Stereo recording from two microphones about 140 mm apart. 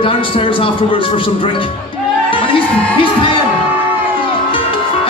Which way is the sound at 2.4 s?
35° left (ahead or behind).